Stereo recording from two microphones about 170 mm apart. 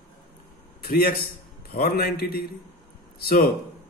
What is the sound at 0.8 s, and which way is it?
A man's voice, 65° left (ahead or behind).